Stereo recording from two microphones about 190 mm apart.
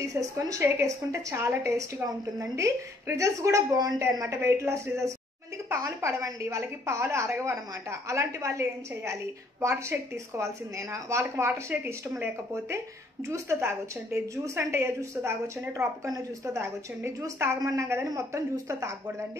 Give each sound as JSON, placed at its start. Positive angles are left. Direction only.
{"t": 0.0, "sound": "speech", "side_deg": -15}